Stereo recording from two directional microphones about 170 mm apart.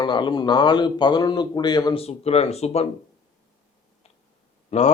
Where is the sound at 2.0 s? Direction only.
40° left (ahead or behind).